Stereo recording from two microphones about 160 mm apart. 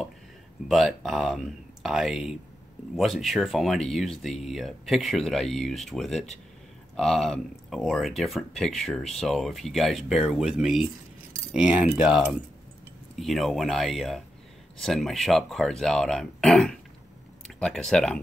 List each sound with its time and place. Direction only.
0.7 s speech: centre (ahead or behind)